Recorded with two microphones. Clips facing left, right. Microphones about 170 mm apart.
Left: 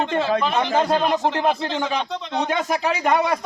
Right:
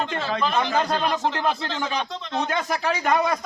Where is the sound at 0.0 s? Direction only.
20° left (ahead or behind).